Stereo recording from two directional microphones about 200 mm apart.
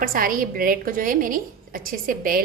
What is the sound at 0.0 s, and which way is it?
A woman's voice, 45° right (ahead or behind).